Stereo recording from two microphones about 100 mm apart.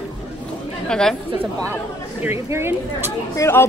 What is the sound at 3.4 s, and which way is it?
Speech, 25° left (ahead or behind).